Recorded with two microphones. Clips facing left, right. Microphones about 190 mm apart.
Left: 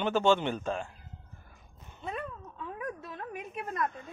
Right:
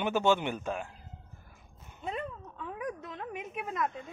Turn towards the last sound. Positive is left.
turn(degrees=-20)  # may be behind; listen again after turning